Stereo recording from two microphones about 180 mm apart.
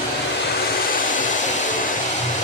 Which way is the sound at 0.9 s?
45° left (ahead or behind).